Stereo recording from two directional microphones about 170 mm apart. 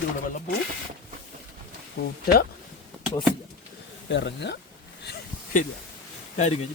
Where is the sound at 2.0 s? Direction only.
65° left (ahead or behind).